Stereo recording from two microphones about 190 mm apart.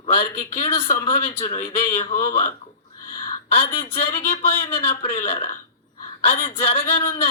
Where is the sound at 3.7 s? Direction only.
30° left (ahead or behind).